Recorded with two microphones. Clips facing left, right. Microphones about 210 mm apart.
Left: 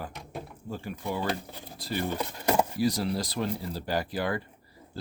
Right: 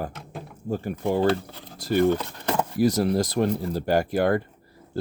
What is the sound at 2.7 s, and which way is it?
Speech, 50° right (ahead or behind).